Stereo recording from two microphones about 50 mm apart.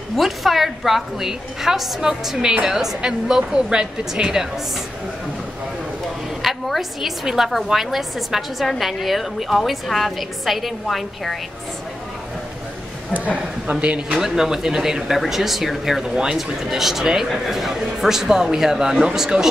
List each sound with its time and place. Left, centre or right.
0.2 s a woman's voice: centre
6.4 s a woman's voice: centre
13.7 s speech: right
14.1 s speech: centre